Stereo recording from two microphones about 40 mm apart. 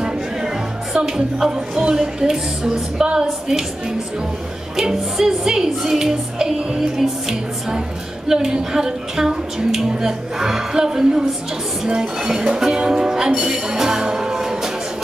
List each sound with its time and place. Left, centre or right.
0.9 s speech: centre
1.5 s music: centre
4.7 s music: centre